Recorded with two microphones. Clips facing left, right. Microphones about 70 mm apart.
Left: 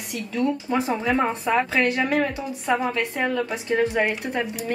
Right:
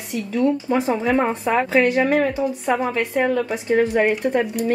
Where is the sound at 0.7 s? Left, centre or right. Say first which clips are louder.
Right 3 dB; centre.